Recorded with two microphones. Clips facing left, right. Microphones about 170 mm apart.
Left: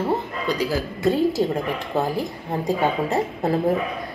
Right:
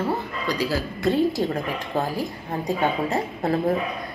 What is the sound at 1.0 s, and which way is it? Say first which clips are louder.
A woman's voice: left 2 dB; 10° left (ahead or behind).